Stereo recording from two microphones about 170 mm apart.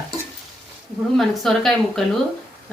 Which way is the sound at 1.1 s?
Centre (ahead or behind).